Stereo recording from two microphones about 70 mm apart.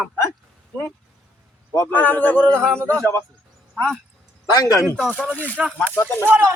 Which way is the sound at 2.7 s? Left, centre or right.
Right.